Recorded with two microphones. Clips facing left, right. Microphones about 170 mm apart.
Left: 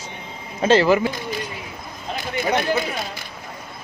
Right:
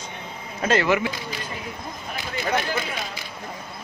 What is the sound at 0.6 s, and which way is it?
Speech, 30° left (ahead or behind).